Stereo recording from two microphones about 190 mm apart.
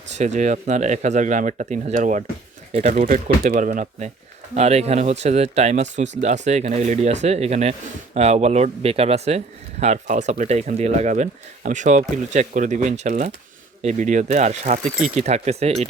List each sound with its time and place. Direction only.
0.1 s speech: 40° right (ahead or behind)